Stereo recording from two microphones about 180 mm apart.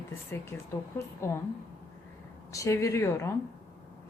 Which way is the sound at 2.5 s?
20° left (ahead or behind).